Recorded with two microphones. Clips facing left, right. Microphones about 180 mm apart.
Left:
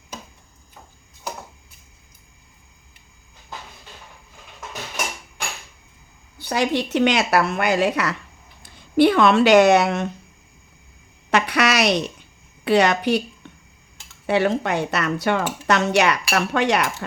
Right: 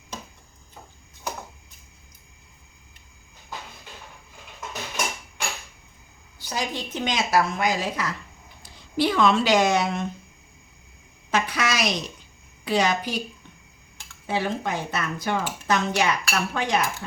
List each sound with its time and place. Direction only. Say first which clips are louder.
6.4 s speech: left 8 dB; 65° left (ahead or behind)
11.3 s a sound: left 5 dB; 70° left (ahead or behind)
12.6 s a woman's voice: left 6 dB; 65° left (ahead or behind)
14.3 s speech: left 7 dB; 70° left (ahead or behind)